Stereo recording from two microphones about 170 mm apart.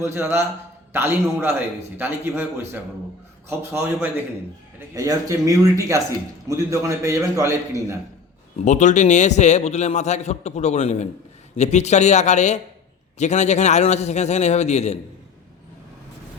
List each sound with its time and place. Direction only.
0.0 s a man's voice: 15° right (ahead or behind)
3.7 s a man's voice: 10° right (ahead or behind)
8.5 s a man's voice: 45° left (ahead or behind)